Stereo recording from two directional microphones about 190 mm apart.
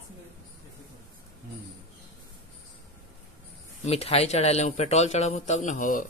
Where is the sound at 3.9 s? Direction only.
35° left (ahead or behind).